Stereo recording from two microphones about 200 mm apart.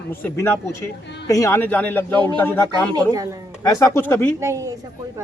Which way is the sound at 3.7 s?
15° left (ahead or behind).